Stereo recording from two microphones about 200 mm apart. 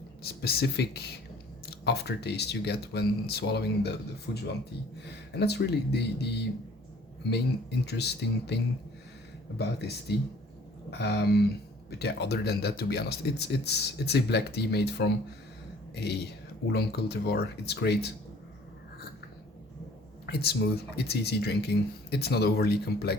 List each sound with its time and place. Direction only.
0.2 s speech: 50° left (ahead or behind)
5.3 s speech: 55° left (ahead or behind)
9.6 s speech: 55° left (ahead or behind)
20.2 s speech: 55° left (ahead or behind)